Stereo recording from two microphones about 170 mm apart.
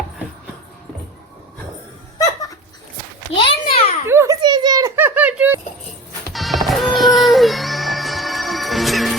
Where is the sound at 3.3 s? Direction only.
30° left (ahead or behind).